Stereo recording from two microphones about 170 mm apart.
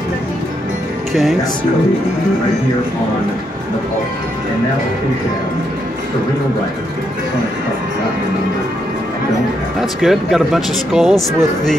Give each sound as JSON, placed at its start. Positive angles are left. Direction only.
{"t": 9.8, "sound": "speech", "side_deg": 0}